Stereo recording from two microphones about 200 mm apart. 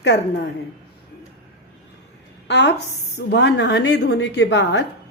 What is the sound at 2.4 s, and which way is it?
A woman's voice, 60° left (ahead or behind).